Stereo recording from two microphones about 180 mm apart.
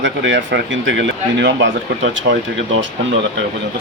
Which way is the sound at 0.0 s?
90° right.